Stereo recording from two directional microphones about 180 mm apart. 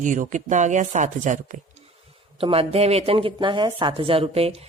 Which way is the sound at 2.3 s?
30° right (ahead or behind).